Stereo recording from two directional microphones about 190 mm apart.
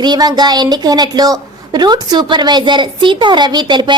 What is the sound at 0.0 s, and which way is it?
A woman's voice, 20° right (ahead or behind).